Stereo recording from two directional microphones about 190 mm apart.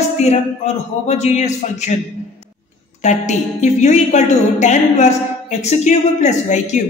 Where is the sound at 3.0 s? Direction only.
40° left (ahead or behind).